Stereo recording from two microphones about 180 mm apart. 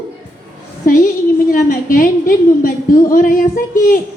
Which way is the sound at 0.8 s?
50° left (ahead or behind).